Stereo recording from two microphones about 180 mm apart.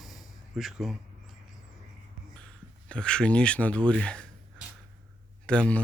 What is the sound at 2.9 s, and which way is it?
A man's voice, 5° left (ahead or behind).